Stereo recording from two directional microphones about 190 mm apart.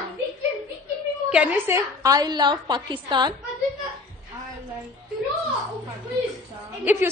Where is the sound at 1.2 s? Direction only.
5° right (ahead or behind); by 3.3 s 25° right (ahead or behind).